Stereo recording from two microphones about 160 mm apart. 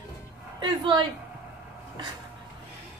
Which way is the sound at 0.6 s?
30° right (ahead or behind).